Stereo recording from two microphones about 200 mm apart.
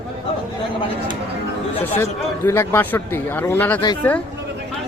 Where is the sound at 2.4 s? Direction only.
10° left (ahead or behind).